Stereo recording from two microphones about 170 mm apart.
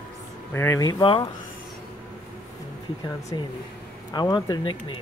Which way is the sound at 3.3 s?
25° left (ahead or behind).